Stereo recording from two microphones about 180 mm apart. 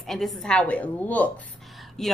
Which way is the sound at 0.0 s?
Centre (ahead or behind).